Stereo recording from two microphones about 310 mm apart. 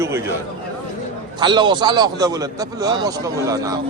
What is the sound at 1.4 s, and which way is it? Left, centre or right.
A man's voice, centre.